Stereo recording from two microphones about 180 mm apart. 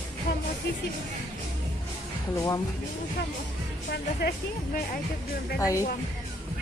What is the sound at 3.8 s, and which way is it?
Speech, 60° left (ahead or behind).